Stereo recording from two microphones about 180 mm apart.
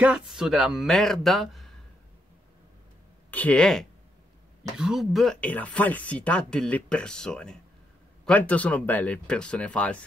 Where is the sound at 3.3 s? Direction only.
5° left (ahead or behind).